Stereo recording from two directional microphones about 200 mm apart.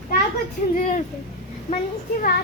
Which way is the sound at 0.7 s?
40° left (ahead or behind).